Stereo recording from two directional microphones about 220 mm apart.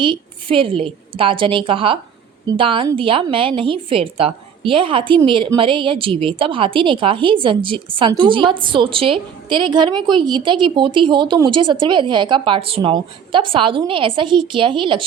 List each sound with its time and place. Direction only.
0.0 s a woman's voice: 20° right (ahead or behind)